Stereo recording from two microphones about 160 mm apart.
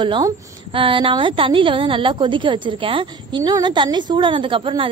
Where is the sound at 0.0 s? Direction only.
30° right (ahead or behind).